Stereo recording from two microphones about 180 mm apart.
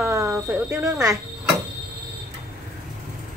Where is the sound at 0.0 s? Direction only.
15° right (ahead or behind).